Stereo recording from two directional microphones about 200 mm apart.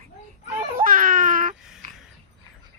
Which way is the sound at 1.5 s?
Centre (ahead or behind).